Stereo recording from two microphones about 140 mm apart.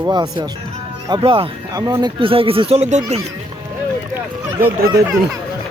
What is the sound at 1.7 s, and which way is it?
Speech, 25° right (ahead or behind).